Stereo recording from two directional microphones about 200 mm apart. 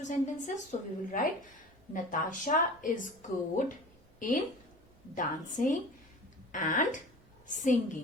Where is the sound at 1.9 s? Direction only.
40° left (ahead or behind).